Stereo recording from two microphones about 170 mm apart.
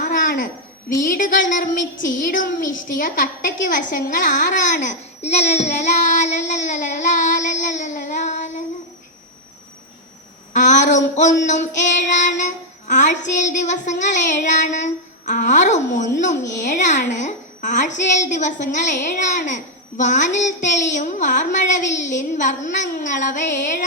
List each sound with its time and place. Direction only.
0.0 s a sound: 55° left (ahead or behind)
1.0 s a woman's voice: 55° left (ahead or behind)
10.5 s female singing: 45° left (ahead or behind)
13.2 s a woman's voice: 45° left (ahead or behind)